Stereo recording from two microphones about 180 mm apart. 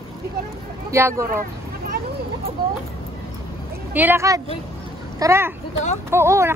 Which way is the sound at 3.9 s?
10° right (ahead or behind).